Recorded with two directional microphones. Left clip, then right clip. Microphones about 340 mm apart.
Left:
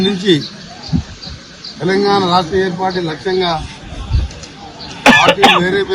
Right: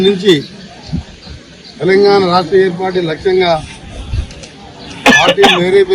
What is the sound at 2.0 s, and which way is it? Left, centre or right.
Speech, centre.